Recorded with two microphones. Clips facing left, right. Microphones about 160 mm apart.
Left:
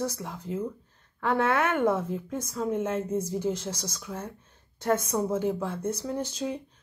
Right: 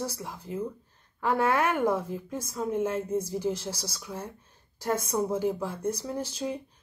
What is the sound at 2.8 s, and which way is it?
Speech, 10° right (ahead or behind).